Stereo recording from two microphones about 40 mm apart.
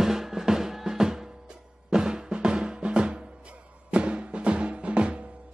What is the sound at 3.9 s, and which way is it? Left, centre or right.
Music, right.